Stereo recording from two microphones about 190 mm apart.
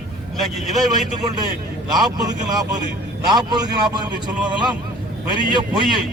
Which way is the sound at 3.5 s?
20° right (ahead or behind).